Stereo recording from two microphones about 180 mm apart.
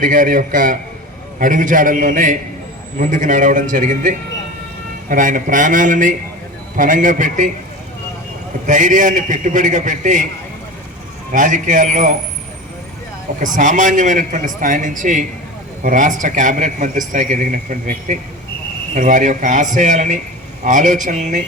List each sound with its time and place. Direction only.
0.0 s a man's voice: 50° right (ahead or behind)
8.6 s a man's voice: 45° right (ahead or behind)
11.3 s a man's voice: 45° right (ahead or behind)
13.4 s a man's voice: 45° right (ahead or behind)
18.9 s a man's voice: 45° right (ahead or behind)